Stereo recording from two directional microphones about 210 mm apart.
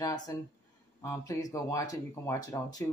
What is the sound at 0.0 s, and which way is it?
Speech, 15° left (ahead or behind).